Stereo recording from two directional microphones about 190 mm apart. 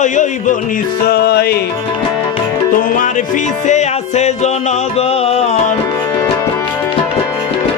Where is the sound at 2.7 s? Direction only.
45° left (ahead or behind).